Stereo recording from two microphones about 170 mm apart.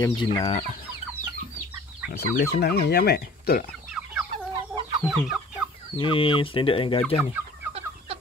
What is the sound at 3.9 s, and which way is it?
Chicken, 5° right (ahead or behind).